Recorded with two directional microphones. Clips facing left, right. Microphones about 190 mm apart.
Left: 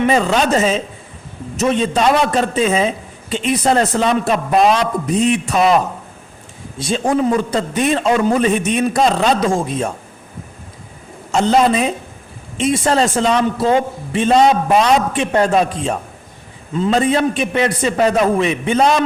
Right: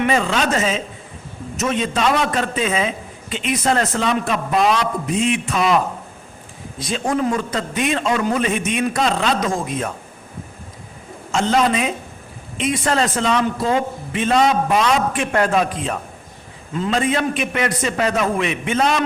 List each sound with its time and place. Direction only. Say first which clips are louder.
0.0 s a man's voice: left 4 dB; 35° left (ahead or behind)
6.7 s a man's voice: left 4 dB; 30° left (ahead or behind)
11.3 s a man's voice: left 4 dB; 35° left (ahead or behind)